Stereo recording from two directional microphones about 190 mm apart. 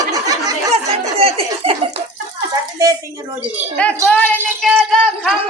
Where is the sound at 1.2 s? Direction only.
30° right (ahead or behind).